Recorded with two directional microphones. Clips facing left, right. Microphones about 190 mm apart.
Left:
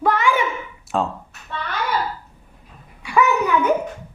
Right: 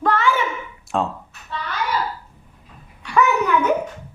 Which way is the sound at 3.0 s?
10° left (ahead or behind).